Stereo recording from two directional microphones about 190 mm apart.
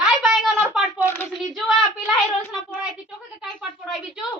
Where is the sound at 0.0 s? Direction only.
Centre (ahead or behind).